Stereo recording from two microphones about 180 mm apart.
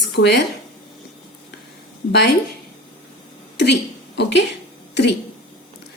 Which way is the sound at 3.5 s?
70° left (ahead or behind).